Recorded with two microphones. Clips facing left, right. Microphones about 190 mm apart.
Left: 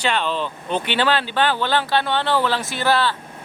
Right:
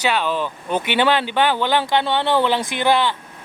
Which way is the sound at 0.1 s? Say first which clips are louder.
Right 2 dB; 10° right (ahead or behind).